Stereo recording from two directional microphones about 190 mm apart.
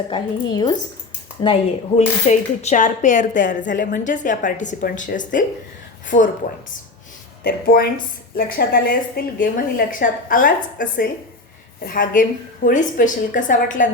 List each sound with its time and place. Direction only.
0.1 s a woman's voice: 20° left (ahead or behind)
2.0 s a woman's voice: 35° left (ahead or behind)
7.4 s a woman's voice: 55° left (ahead or behind)